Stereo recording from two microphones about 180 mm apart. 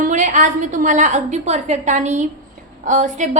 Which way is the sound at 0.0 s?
45° right (ahead or behind).